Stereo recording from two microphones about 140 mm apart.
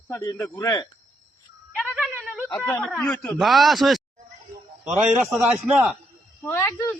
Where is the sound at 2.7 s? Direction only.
10° left (ahead or behind).